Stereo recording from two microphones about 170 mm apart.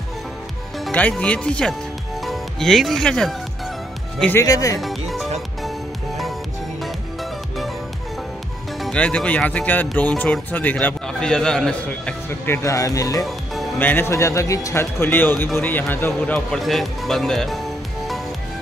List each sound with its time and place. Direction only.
0.7 s speech: 5° left (ahead or behind)
4.2 s speech: 15° left (ahead or behind)
4.7 s music: centre (ahead or behind)
8.7 s speech: 5° left (ahead or behind)